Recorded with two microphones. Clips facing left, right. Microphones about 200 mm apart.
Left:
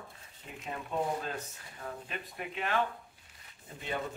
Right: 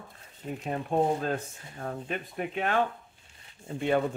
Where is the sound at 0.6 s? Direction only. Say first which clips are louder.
Right 7 dB; 45° right (ahead or behind).